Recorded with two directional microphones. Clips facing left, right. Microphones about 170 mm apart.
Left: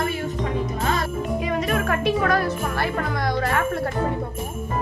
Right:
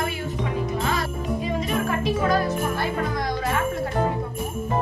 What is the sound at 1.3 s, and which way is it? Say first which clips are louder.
Music: left 1 dB; 65° left (ahead or behind).